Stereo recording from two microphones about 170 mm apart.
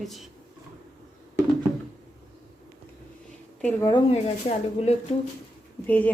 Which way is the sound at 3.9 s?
35° left (ahead or behind).